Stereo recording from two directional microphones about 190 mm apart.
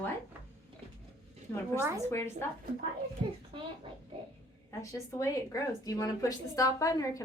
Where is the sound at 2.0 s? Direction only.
10° left (ahead or behind).